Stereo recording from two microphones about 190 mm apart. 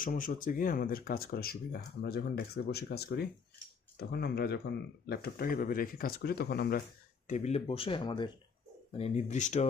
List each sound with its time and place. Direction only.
0.0 s speech: 45° left (ahead or behind)
7.3 s speech: 35° left (ahead or behind)